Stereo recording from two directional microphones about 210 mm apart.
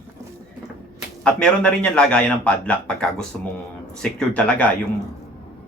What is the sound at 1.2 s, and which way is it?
A man's voice, 5° left (ahead or behind).